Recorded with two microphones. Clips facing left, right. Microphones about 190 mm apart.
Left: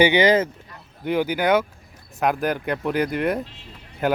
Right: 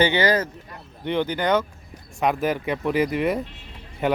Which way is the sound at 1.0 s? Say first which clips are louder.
Left 2 dB; 5° left (ahead or behind).